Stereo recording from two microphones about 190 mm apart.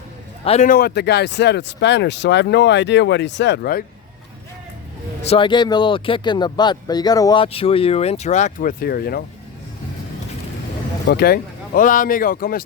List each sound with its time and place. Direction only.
0.4 s a man's voice: 35° left (ahead or behind)
0.7 s speech: 55° left (ahead or behind)
5.2 s speech: 30° left (ahead or behind); by 9.2 s 55° left (ahead or behind)
11.1 s speech: 55° left (ahead or behind)